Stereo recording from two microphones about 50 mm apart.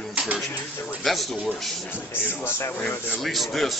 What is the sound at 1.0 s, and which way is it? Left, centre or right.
Speech, centre.